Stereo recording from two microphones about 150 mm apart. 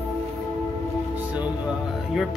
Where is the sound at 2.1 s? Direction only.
5° right (ahead or behind).